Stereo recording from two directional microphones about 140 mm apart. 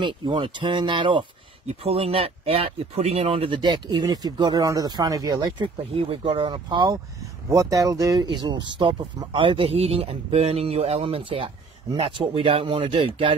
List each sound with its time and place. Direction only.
0.0 s speech: 35° right (ahead or behind)
5.9 s speech: 40° right (ahead or behind)